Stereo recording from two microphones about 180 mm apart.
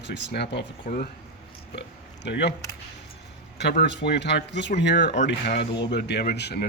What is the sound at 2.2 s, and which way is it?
Speech, 70° left (ahead or behind).